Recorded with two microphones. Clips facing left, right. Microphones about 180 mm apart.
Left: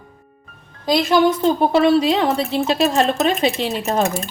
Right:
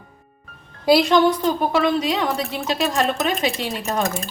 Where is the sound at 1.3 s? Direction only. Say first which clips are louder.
Left 4 dB; 25° left (ahead or behind).